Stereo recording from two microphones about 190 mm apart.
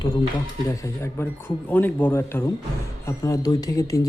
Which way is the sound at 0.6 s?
15° left (ahead or behind).